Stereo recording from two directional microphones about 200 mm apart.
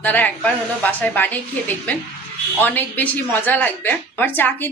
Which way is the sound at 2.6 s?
10° left (ahead or behind).